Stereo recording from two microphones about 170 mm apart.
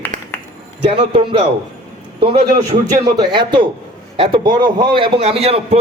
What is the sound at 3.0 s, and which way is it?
A man's voice, 25° right (ahead or behind).